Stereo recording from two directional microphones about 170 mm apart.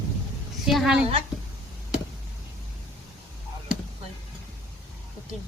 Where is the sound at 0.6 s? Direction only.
Centre (ahead or behind).